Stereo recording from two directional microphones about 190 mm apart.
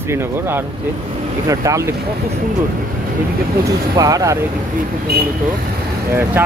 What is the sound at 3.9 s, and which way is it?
Speech, 20° right (ahead or behind).